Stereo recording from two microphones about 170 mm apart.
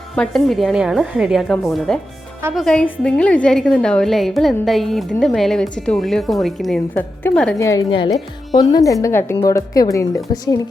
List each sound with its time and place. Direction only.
0.2 s a woman's voice: centre (ahead or behind)
6.9 s a woman's voice: 10° left (ahead or behind)
7.6 s a woman's voice: 20° left (ahead or behind)